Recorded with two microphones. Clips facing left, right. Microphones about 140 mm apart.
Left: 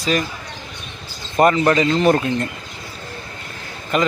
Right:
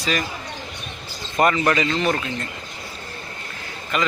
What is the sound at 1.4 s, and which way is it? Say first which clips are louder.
Speech: left 4 dB; 35° left (ahead or behind).